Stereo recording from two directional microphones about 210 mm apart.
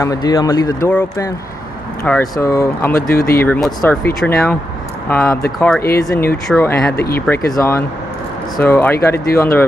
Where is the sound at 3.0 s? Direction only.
45° left (ahead or behind).